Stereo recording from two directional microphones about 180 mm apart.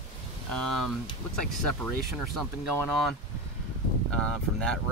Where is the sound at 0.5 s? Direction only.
5° left (ahead or behind).